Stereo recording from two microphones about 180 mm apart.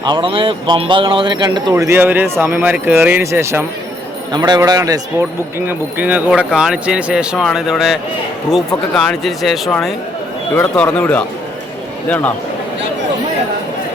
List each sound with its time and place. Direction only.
0.0 s speech: 25° right (ahead or behind)
1.7 s speech: 15° right (ahead or behind)
4.3 s speech: 20° right (ahead or behind); by 12.3 s 10° left (ahead or behind)